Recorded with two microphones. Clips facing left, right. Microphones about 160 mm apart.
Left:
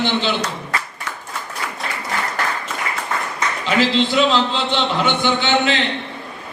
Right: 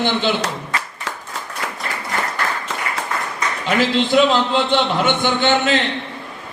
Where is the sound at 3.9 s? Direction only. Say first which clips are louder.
Right 4 dB; 50° right (ahead or behind).